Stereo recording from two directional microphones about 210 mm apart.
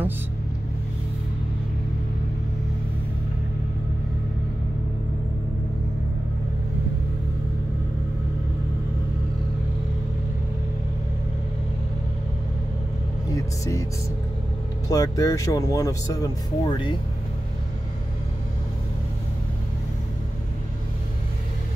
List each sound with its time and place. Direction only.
13.3 s music: 15° left (ahead or behind)
14.9 s speech: 15° left (ahead or behind)